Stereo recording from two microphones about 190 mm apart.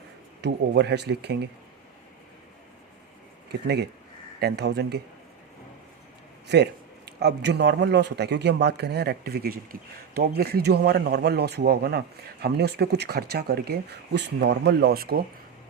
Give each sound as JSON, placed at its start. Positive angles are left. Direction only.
{"t": 0.4, "sound": "speech", "side_deg": -60}
{"t": 3.5, "sound": "speech", "side_deg": -60}
{"t": 6.5, "sound": "speech", "side_deg": -60}